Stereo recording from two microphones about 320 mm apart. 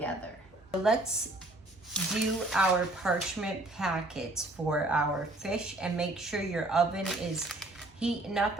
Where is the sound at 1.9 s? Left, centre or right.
Centre.